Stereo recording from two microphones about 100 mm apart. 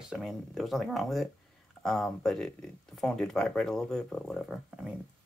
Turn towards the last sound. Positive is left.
turn(degrees=0)  # may be behind; listen again after turning